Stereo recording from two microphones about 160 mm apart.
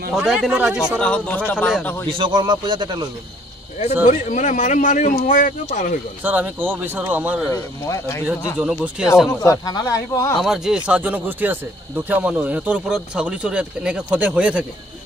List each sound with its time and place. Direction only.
0.1 s speech: 5° right (ahead or behind)
0.9 s speech: 5° left (ahead or behind)
2.0 s speech: 30° right (ahead or behind)
4.0 s speech: 50° left (ahead or behind)
6.2 s speech: 10° right (ahead or behind)
7.5 s speech: 15° left (ahead or behind)
8.5 s speech: 5° right (ahead or behind)
9.3 s speech: 20° left (ahead or behind)
10.3 s speech: centre (ahead or behind)